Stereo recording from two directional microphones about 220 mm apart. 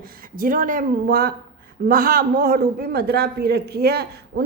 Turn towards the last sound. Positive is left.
turn(degrees=-45)  # may be behind; listen again after turning